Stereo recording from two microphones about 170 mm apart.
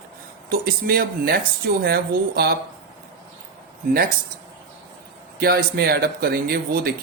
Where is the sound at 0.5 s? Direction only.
60° right (ahead or behind).